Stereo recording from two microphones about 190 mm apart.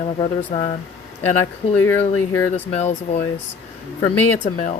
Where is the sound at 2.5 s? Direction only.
35° left (ahead or behind).